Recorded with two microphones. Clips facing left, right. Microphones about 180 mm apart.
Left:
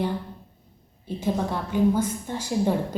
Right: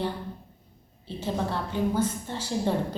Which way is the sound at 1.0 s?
15° left (ahead or behind).